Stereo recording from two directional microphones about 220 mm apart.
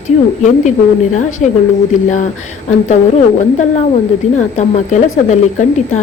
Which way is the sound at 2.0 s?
35° left (ahead or behind).